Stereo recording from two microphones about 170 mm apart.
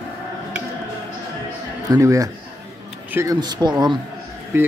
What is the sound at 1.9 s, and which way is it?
Speech, 20° right (ahead or behind).